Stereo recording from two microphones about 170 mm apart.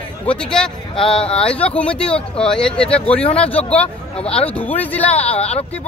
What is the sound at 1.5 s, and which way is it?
A man's voice, 5° left (ahead or behind).